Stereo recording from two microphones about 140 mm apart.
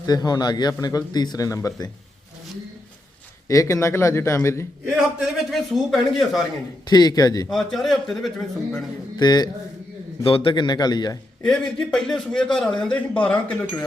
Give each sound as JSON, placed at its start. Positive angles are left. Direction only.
{"t": 0.0, "sound": "a man's voice", "side_deg": 30}
{"t": 3.5, "sound": "a man's voice", "side_deg": 20}
{"t": 5.5, "sound": "a man's voice", "side_deg": 0}
{"t": 6.8, "sound": "a man's voice", "side_deg": 30}
{"t": 7.5, "sound": "a man's voice", "side_deg": 0}
{"t": 9.1, "sound": "a man's voice", "side_deg": 30}
{"t": 11.4, "sound": "a man's voice", "side_deg": 5}